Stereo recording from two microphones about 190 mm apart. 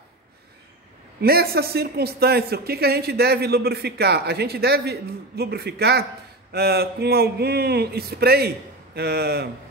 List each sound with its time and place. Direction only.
1.2 s speech: 55° right (ahead or behind)